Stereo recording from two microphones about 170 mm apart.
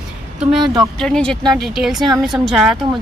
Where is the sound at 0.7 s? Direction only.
5° left (ahead or behind).